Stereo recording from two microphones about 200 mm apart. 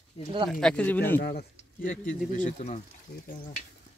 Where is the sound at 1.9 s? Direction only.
40° left (ahead or behind).